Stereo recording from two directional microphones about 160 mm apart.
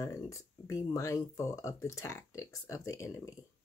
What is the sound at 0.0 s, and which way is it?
Speech, 20° left (ahead or behind).